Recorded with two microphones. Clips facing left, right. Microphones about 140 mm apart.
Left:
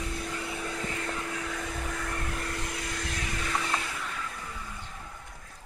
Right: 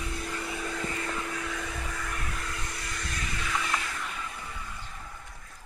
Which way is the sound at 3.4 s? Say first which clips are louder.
Even; 35° left (ahead or behind).